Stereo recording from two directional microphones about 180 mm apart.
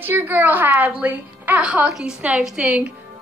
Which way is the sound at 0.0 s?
10° right (ahead or behind).